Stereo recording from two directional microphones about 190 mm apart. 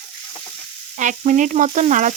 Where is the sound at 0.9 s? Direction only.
40° right (ahead or behind).